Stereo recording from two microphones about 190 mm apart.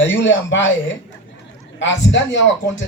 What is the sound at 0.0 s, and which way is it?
Speech, 75° left (ahead or behind).